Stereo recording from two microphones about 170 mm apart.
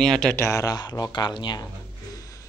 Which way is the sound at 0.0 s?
5° left (ahead or behind).